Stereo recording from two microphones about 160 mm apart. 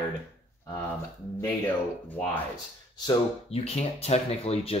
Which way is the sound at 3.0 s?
40° left (ahead or behind).